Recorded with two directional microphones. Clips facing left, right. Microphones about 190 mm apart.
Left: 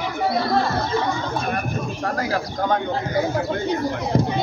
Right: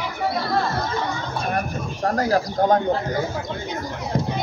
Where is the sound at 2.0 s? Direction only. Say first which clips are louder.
Right 6 dB; 40° right (ahead or behind).